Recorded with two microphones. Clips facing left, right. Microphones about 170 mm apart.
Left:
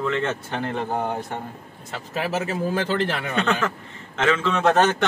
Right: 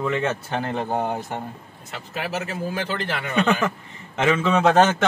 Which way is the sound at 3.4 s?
10° right (ahead or behind).